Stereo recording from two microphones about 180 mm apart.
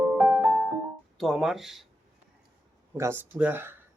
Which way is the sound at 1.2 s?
Centre (ahead or behind).